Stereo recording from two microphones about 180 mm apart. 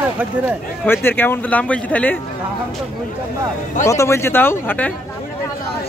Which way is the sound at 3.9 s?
15° left (ahead or behind).